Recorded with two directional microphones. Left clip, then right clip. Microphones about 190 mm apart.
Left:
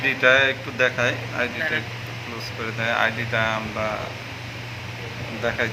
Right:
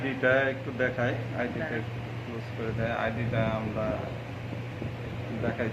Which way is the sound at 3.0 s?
25° left (ahead or behind).